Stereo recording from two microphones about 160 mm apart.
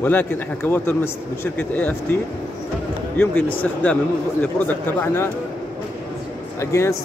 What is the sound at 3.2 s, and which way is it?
A man's voice, 10° left (ahead or behind).